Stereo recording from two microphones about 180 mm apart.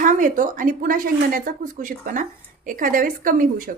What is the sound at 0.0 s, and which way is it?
A woman's voice, 45° right (ahead or behind).